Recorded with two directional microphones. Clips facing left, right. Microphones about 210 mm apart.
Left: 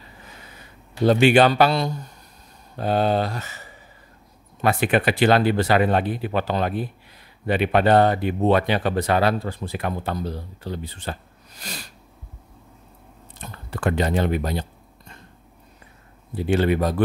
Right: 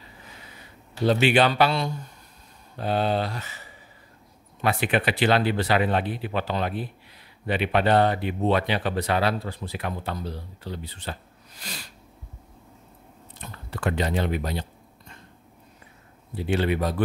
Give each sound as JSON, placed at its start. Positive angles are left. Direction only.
{"t": 1.2, "sound": "speech", "side_deg": 45}
{"t": 13.4, "sound": "speech", "side_deg": 45}
{"t": 16.3, "sound": "speech", "side_deg": 45}